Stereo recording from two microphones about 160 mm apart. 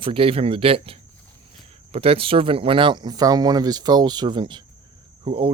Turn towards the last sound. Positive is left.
turn(degrees=-35)  # may be behind; listen again after turning